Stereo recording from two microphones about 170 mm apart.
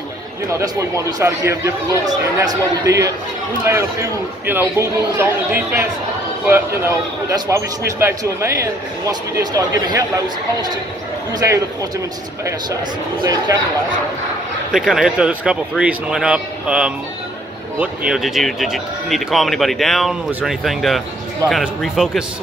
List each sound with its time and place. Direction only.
0.5 s speech: 15° right (ahead or behind)
7.2 s speech: 15° right (ahead or behind)
13.2 s speech: 20° right (ahead or behind)
14.7 s speech: 5° right (ahead or behind)